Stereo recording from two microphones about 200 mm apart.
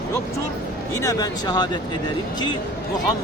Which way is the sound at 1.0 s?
20° left (ahead or behind).